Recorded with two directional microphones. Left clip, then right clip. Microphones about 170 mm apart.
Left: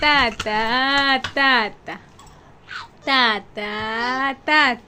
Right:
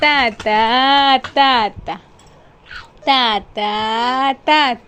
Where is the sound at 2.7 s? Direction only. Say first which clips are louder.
Left 1 dB; 20° left (ahead or behind).